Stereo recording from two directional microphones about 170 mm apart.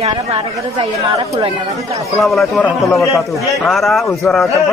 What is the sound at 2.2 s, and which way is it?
A man's voice, centre (ahead or behind).